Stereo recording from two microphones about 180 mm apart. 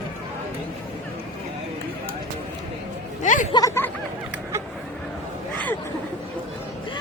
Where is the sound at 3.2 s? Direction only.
45° left (ahead or behind).